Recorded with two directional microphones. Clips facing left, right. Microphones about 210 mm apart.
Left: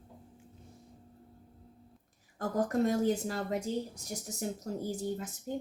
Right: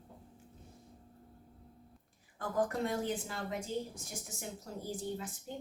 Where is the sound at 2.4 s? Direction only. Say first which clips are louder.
Left 4 dB; 40° left (ahead or behind).